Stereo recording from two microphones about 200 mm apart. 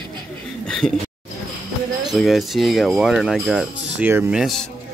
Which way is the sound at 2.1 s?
Centre (ahead or behind).